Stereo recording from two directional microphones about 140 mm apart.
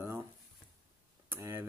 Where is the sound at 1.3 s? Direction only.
15° right (ahead or behind).